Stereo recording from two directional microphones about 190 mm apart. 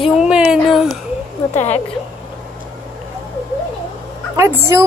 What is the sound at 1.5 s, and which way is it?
Speech, 40° left (ahead or behind).